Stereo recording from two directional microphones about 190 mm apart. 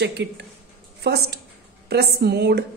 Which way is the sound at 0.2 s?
65° right (ahead or behind).